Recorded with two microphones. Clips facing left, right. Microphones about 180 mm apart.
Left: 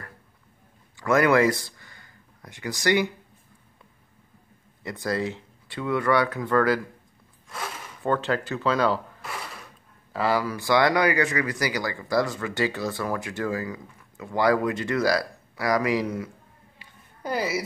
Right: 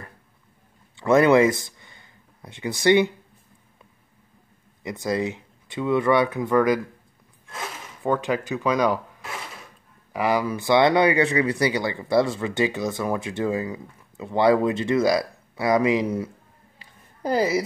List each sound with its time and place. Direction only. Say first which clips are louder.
0.9 s speech: right 4 dB; 25° right (ahead or behind)
4.8 s speech: right 2 dB; 20° right (ahead or behind)
10.1 s speech: right 2 dB; 15° right (ahead or behind)
16.7 s a sound: even; 35° right (ahead or behind)